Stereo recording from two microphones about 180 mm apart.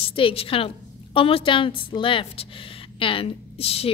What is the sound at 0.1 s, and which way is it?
A woman's voice, 30° left (ahead or behind).